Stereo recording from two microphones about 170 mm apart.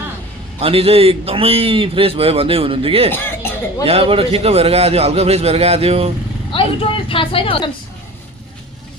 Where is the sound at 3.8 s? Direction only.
35° right (ahead or behind).